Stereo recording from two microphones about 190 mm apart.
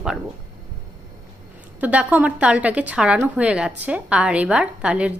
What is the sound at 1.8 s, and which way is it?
A woman's voice, 10° right (ahead or behind).